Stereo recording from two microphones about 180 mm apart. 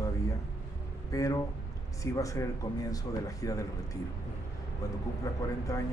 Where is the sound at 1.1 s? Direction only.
20° left (ahead or behind).